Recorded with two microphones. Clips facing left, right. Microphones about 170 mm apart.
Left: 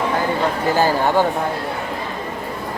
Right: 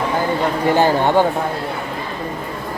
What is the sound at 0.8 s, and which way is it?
Speech, 20° right (ahead or behind).